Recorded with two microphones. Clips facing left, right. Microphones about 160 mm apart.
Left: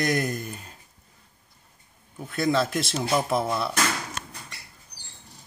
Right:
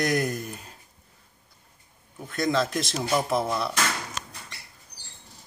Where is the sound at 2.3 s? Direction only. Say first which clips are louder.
Left 1 dB; 5° left (ahead or behind).